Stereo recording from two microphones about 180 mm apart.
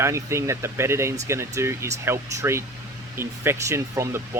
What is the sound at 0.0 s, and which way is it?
Speech, 15° right (ahead or behind).